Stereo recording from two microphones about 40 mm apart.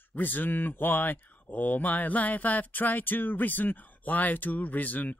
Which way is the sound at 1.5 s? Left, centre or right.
Left.